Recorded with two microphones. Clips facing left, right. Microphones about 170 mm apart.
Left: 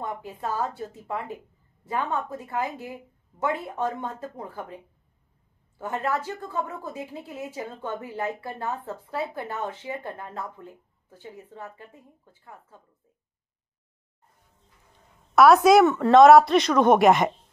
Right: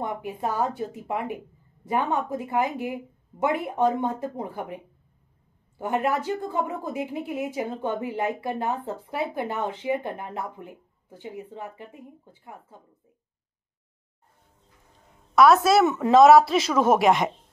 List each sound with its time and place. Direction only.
0.0 s a woman's voice: 15° right (ahead or behind)
5.8 s a woman's voice: 15° right (ahead or behind)
15.3 s a woman's voice: centre (ahead or behind)
15.8 s a woman's voice: 15° right (ahead or behind)
16.1 s a woman's voice: centre (ahead or behind)